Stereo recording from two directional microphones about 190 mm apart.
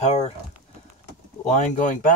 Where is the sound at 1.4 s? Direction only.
40° left (ahead or behind).